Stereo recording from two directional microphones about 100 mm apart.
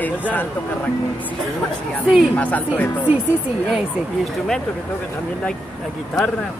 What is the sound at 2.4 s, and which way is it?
Speech, 15° left (ahead or behind).